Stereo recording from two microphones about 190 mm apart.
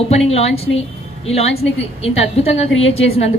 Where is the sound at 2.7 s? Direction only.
90° left.